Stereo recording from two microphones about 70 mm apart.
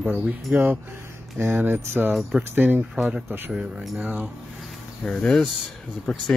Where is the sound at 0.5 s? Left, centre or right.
Right.